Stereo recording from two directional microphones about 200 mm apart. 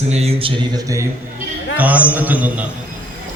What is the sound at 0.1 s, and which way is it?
Speech, 30° right (ahead or behind).